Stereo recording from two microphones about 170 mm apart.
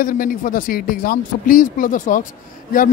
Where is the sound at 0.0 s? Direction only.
55° left (ahead or behind).